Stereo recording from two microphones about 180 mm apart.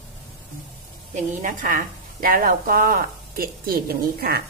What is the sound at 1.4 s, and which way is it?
Speech, 50° right (ahead or behind).